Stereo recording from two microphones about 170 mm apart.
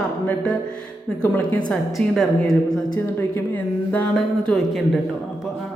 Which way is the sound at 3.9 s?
10° left (ahead or behind).